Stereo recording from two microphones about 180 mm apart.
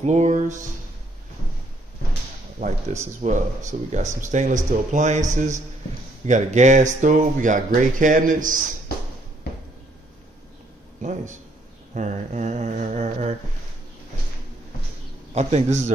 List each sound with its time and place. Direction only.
0.0 s speech: 40° right (ahead or behind)
2.6 s speech: 40° right (ahead or behind)
11.0 s speech: 45° right (ahead or behind)
15.3 s speech: 40° right (ahead or behind)